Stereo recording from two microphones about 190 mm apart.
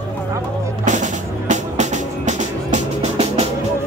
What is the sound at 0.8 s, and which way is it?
Music, 40° right (ahead or behind).